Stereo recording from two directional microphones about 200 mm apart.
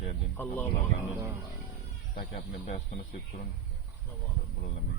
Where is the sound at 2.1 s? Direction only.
35° left (ahead or behind).